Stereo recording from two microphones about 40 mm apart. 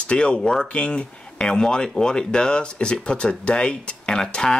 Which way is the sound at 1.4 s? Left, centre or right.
Centre.